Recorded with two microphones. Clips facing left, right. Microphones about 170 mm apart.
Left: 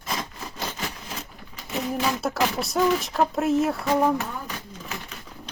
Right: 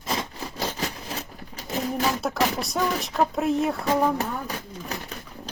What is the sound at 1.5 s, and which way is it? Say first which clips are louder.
Pigeon: even; 35° right (ahead or behind).